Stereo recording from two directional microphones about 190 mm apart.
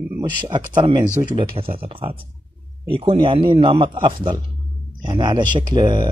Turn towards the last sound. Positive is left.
turn(degrees=-25)  # may be behind; listen again after turning